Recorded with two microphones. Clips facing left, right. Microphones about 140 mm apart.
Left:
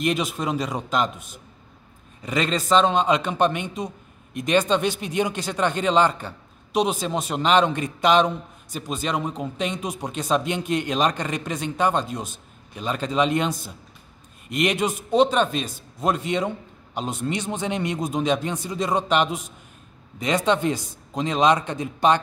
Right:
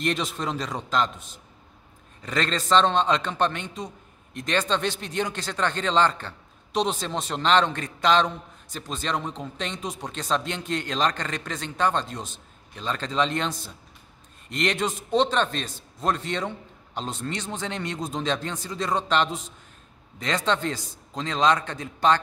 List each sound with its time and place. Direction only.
0.0 s a man's voice: 10° left (ahead or behind)